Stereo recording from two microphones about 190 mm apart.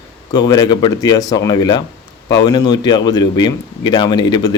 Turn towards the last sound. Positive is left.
turn(degrees=25)  # may be behind; listen again after turning